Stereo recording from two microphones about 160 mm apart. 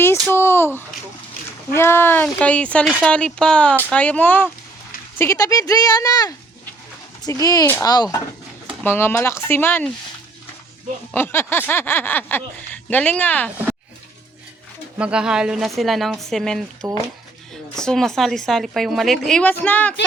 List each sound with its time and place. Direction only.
0.0 s a sound: 15° left (ahead or behind)
1.7 s speech: 15° left (ahead or behind)
8.8 s speech: 15° left (ahead or behind)
11.1 s speech: 15° left (ahead or behind)
14.9 s a woman's voice: 5° right (ahead or behind); by 20.0 s 10° left (ahead or behind)